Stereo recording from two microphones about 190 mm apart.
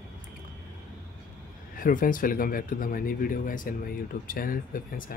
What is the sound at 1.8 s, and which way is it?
Speech, 45° left (ahead or behind).